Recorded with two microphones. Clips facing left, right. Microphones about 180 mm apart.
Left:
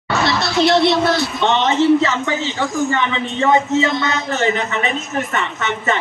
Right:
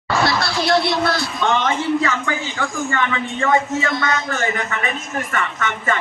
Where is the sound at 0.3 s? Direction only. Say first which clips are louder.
Left 7 dB; 20° left (ahead or behind).